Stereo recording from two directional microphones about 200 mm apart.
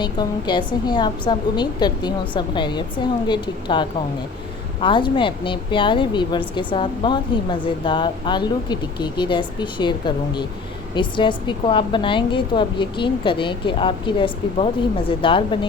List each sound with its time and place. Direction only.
0.0 s a woman's voice: 20° left (ahead or behind)
10.9 s a woman's voice: 25° left (ahead or behind)